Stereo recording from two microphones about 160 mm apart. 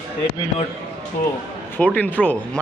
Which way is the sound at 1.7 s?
10° left (ahead or behind).